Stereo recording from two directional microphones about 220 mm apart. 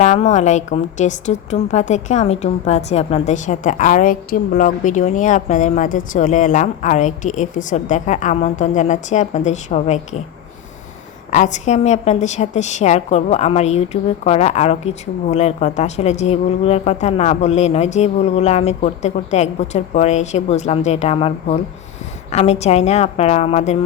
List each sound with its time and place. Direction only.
0.0 s a woman's voice: 30° left (ahead or behind)
11.3 s a woman's voice: 35° left (ahead or behind)